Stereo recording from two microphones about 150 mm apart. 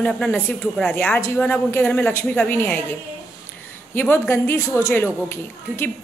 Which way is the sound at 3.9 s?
15° left (ahead or behind).